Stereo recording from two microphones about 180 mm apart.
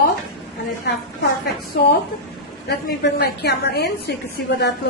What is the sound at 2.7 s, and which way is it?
A woman's voice, 65° left (ahead or behind).